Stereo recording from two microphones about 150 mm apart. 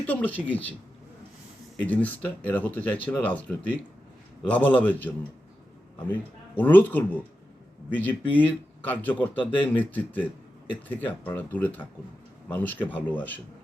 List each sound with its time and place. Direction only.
0.0 s speech: 10° left (ahead or behind)
1.8 s speech: 10° left (ahead or behind)
6.6 s speech: 10° left (ahead or behind)